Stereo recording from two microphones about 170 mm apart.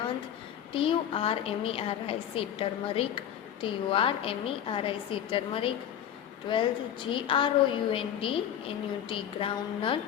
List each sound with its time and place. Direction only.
0.7 s a woman's voice: 30° left (ahead or behind)